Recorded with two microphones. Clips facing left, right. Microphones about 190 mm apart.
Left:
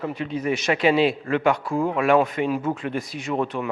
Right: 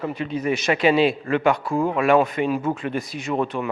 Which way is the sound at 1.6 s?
25° right (ahead or behind).